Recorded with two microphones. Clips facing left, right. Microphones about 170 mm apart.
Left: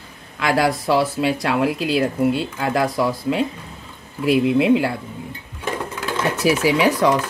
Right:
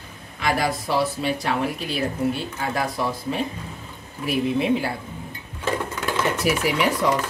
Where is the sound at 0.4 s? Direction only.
90° left.